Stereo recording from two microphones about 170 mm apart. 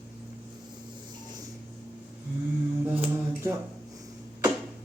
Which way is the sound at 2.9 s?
10° right (ahead or behind).